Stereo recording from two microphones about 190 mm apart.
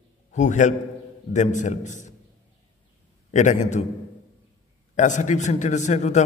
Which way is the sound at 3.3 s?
40° left (ahead or behind).